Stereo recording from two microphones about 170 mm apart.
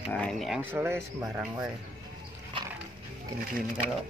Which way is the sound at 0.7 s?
15° right (ahead or behind).